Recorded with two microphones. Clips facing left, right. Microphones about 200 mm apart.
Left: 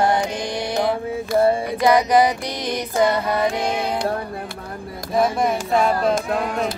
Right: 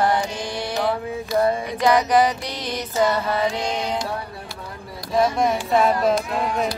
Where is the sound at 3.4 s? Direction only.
55° left (ahead or behind).